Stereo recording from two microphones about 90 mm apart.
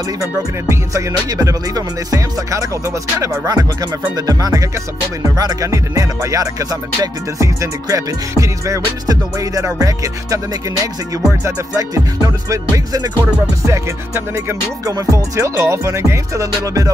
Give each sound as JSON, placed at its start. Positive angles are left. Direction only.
{"t": 0.2, "sound": "speech", "side_deg": -35}
{"t": 4.3, "sound": "music", "side_deg": -40}
{"t": 5.2, "sound": "speech", "side_deg": -45}
{"t": 12.4, "sound": "music", "side_deg": -40}
{"t": 13.7, "sound": "speech", "side_deg": -30}